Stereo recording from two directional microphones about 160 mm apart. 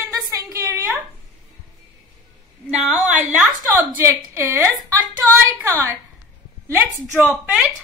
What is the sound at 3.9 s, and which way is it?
A woman's voice, 15° right (ahead or behind).